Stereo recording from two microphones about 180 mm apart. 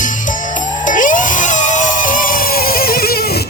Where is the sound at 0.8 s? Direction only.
45° left (ahead or behind).